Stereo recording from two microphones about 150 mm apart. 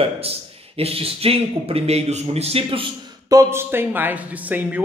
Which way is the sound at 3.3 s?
20° right (ahead or behind).